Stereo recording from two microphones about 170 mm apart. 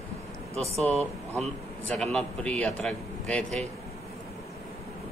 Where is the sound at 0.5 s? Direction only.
40° right (ahead or behind).